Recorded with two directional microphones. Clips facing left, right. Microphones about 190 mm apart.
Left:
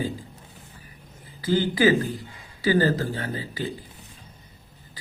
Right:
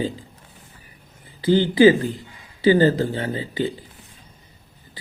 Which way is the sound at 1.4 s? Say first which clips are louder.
Right 7 dB; 25° right (ahead or behind).